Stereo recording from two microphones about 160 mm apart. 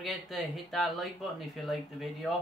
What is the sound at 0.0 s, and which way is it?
Speech, centre (ahead or behind).